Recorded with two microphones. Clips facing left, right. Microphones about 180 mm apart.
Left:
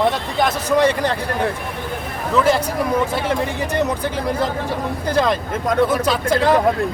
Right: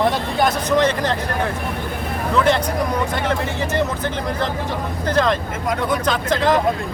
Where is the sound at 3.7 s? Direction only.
10° left (ahead or behind).